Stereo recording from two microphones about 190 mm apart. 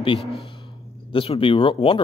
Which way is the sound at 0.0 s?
25° left (ahead or behind).